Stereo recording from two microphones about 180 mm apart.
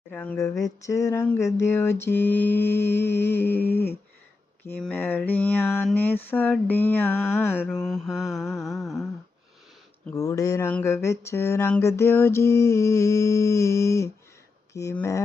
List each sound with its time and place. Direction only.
0.1 s mantra: 10° left (ahead or behind)
10.1 s speech: 20° left (ahead or behind)
10.7 s mantra: 10° left (ahead or behind)